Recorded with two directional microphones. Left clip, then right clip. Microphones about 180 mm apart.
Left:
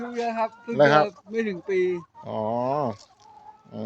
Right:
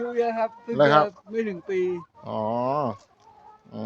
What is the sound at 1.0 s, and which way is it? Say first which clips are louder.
Speech: even; 15° left (ahead or behind).